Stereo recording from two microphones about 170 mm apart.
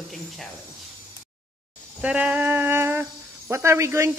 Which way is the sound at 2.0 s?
10° right (ahead or behind).